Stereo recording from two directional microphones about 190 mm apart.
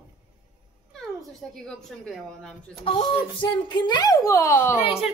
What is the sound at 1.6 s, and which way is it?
A woman's voice, 5° left (ahead or behind).